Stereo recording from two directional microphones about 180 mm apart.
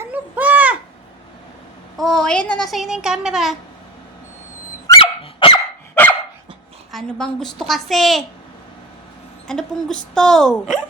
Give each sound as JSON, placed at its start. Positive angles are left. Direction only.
{"t": 0.0, "sound": "a sound", "side_deg": -10}
{"t": 2.0, "sound": "a woman's voice", "side_deg": 5}
{"t": 4.9, "sound": "dog", "side_deg": 30}
{"t": 5.9, "sound": "dog", "side_deg": 10}
{"t": 6.9, "sound": "a woman's voice", "side_deg": 5}
{"t": 9.5, "sound": "a woman's voice", "side_deg": 5}